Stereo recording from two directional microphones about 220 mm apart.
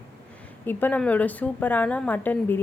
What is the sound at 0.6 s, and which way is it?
A woman's voice, 10° left (ahead or behind).